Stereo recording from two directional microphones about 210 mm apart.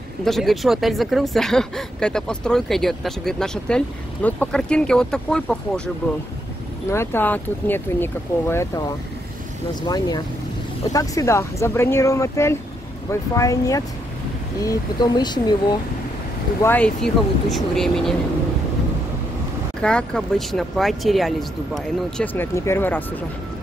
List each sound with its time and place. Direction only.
0.2 s speech: centre (ahead or behind)
6.9 s speech: 10° left (ahead or behind)
16.6 s speech: 5° left (ahead or behind)
19.8 s speech: 5° left (ahead or behind)